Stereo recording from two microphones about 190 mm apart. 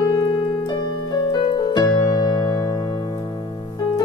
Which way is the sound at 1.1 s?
25° left (ahead or behind).